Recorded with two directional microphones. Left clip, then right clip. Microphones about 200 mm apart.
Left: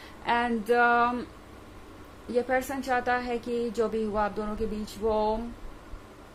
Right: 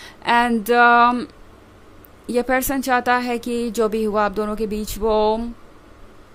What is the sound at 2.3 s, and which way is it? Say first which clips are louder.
A woman's voice: right 7 dB; 55° right (ahead or behind).